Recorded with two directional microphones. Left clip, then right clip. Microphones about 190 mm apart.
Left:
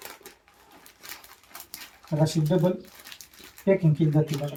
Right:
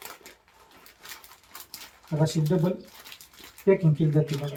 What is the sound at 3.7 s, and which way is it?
Speech, 20° left (ahead or behind).